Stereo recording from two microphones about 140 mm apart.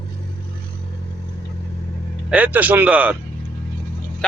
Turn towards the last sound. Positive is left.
turn(degrees=-10)  # may be behind; listen again after turning